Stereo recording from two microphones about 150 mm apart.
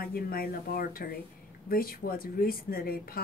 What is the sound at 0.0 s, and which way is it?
Speech, 90° left.